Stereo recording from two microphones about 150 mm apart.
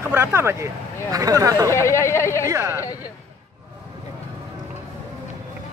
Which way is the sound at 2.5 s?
20° right (ahead or behind).